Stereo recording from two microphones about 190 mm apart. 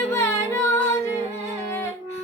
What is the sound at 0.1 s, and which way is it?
Music, 15° left (ahead or behind).